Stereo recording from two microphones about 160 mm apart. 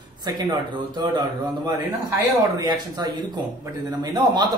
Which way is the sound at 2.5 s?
25° right (ahead or behind).